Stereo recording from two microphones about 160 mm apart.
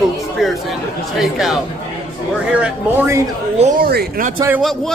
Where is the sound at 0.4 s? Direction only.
Centre (ahead or behind).